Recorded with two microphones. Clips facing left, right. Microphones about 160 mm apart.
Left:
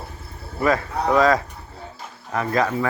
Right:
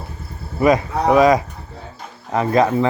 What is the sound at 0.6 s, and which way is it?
Livestock, 15° right (ahead or behind).